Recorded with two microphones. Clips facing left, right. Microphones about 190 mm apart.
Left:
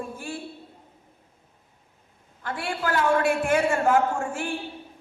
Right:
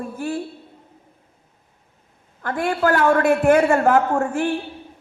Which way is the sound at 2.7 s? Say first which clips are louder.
Right 6 dB; 55° right (ahead or behind).